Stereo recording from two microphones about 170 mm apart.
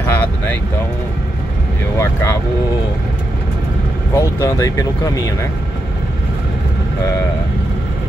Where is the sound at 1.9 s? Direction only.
15° left (ahead or behind).